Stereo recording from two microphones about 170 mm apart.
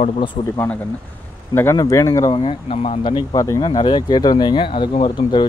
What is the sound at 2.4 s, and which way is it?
Speech, 35° left (ahead or behind).